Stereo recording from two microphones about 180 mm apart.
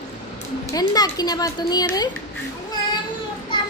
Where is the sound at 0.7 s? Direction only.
20° left (ahead or behind).